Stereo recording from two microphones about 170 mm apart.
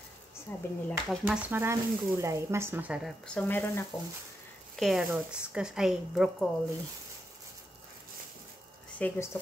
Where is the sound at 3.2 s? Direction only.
10° left (ahead or behind).